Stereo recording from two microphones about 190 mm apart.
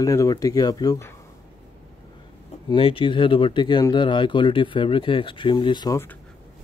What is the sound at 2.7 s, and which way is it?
Speech, 30° left (ahead or behind).